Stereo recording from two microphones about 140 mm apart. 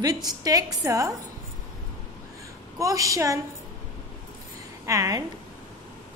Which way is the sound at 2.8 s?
25° right (ahead or behind).